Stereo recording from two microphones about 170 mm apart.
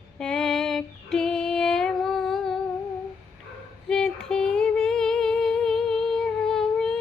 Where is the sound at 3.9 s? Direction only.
5° left (ahead or behind).